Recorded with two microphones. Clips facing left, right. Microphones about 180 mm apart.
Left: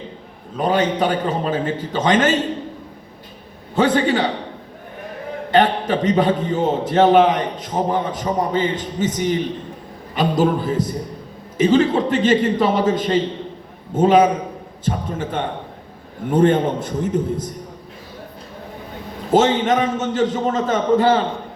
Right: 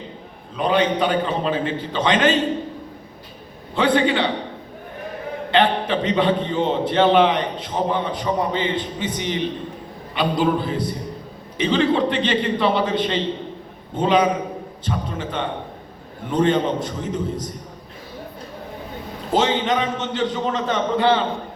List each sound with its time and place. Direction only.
0.5 s a man's voice: 45° left (ahead or behind)
3.8 s a man's voice: 45° left (ahead or behind)
5.5 s a man's voice: 45° left (ahead or behind)
19.3 s a man's voice: 50° left (ahead or behind)